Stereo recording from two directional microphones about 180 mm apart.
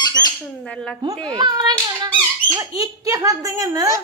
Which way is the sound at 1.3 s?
20° right (ahead or behind).